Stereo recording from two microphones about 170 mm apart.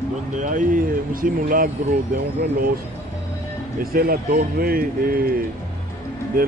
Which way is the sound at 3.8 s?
60° right (ahead or behind).